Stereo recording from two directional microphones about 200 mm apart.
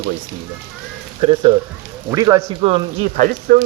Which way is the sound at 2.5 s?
25° right (ahead or behind).